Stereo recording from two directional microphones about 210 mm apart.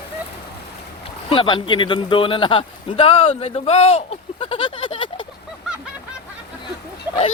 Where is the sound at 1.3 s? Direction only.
25° left (ahead or behind).